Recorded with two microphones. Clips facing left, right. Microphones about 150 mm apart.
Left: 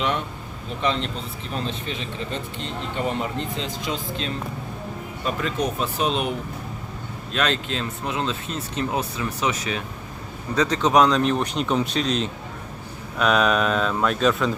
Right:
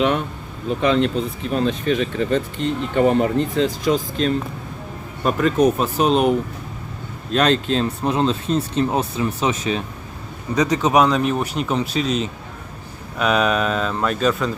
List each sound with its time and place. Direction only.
0.8 s speech: 50° right (ahead or behind)
7.3 s speech: 40° right (ahead or behind)
10.5 s speech: 15° right (ahead or behind)